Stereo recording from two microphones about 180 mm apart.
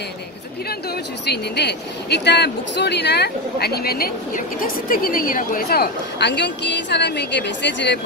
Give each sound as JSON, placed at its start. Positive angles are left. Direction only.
{"t": 1.2, "sound": "a woman's voice", "side_deg": 65}